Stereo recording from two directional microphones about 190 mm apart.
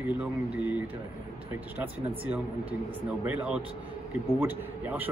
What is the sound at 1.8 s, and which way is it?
Speech, 5° right (ahead or behind).